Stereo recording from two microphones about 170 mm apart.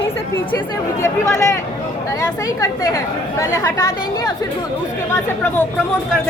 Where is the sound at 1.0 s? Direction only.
20° left (ahead or behind).